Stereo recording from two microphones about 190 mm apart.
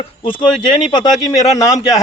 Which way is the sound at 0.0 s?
25° left (ahead or behind).